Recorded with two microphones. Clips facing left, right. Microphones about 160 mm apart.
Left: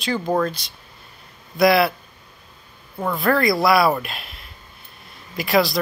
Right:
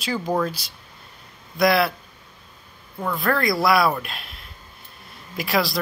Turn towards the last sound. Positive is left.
turn(degrees=0)  # may be behind; listen again after turning